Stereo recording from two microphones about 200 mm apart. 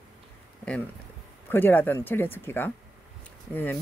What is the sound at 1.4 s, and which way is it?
Speech, 10° left (ahead or behind).